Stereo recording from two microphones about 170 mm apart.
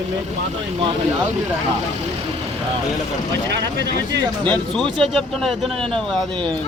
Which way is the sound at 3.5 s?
90° right.